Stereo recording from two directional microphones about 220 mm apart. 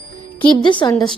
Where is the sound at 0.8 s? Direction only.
20° left (ahead or behind).